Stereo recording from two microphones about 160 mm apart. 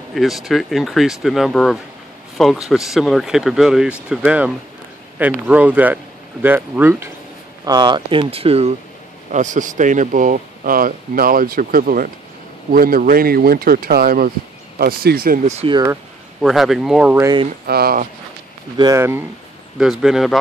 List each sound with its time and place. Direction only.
0.1 s a man's voice: centre (ahead or behind)
5.5 s speech: 10° right (ahead or behind)
7.6 s speech: 25° right (ahead or behind)
9.3 s speech: 50° right (ahead or behind)
14.8 s speech: 70° right (ahead or behind)
15.4 s speech: 45° right (ahead or behind)
15.7 s speech: 20° right (ahead or behind)
16.3 s speech: centre (ahead or behind)
17.6 s speech: 70° right (ahead or behind)
18.8 s speech: 20° right (ahead or behind)
19.8 s speech: 5° right (ahead or behind)